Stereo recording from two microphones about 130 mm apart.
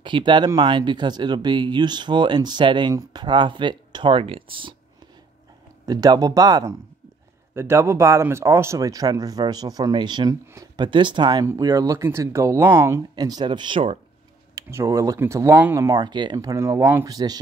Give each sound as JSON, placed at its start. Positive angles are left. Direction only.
{"t": 0.0, "sound": "speech", "side_deg": -35}
{"t": 5.9, "sound": "speech", "side_deg": -30}
{"t": 10.4, "sound": "speech", "side_deg": -20}
{"t": 10.8, "sound": "speech", "side_deg": -40}
{"t": 13.1, "sound": "speech", "side_deg": -30}
{"t": 14.5, "sound": "speech", "side_deg": -20}